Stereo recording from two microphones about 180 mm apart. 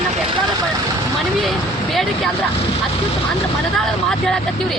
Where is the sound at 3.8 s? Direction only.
5° left (ahead or behind).